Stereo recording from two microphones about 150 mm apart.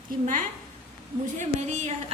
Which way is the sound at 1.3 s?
50° right (ahead or behind).